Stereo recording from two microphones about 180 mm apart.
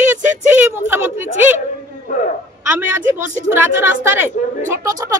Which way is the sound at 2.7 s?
15° right (ahead or behind).